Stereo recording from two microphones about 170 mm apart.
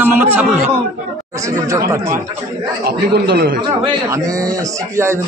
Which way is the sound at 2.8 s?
70° right (ahead or behind).